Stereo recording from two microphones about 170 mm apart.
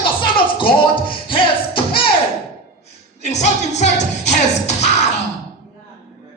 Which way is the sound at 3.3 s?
40° left (ahead or behind).